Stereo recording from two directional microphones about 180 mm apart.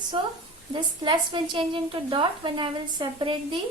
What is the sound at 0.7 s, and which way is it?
A woman's voice, 25° right (ahead or behind).